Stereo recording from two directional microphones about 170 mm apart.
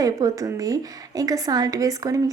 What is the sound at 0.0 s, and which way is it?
Speech, 20° right (ahead or behind).